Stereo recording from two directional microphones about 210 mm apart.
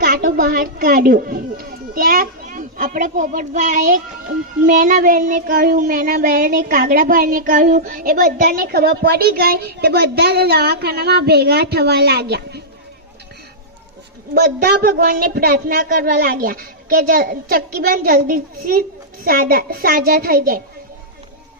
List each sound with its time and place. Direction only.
0.0 s a child's voice: 50° right (ahead or behind)
4.6 s child singing: 40° right (ahead or behind)
14.3 s child singing: 45° right (ahead or behind)